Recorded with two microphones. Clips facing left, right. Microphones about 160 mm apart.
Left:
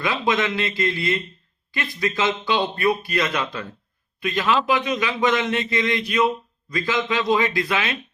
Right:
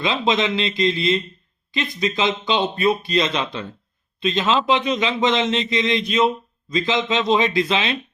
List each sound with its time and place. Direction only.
0.0 s a man's voice: 20° right (ahead or behind)